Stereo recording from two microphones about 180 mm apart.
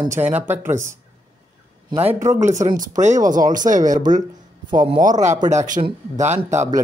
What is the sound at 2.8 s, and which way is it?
Speech, 45° right (ahead or behind).